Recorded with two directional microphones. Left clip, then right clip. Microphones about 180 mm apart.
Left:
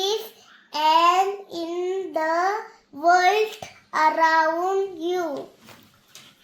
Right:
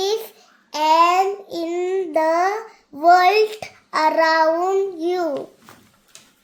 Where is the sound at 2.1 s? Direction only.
35° right (ahead or behind).